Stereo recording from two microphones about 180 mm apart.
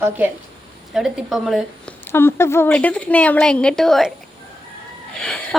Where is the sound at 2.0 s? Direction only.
15° left (ahead or behind).